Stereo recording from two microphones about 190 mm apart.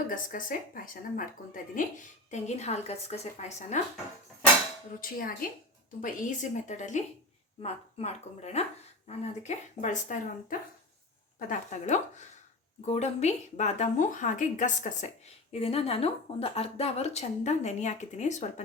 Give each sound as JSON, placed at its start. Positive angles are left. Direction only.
{"t": 0.1, "sound": "speech", "side_deg": 45}
{"t": 4.9, "sound": "speech", "side_deg": 50}